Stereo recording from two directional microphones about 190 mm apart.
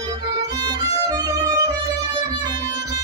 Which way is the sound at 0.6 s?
20° right (ahead or behind).